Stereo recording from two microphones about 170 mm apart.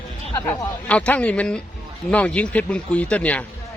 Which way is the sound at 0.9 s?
5° left (ahead or behind).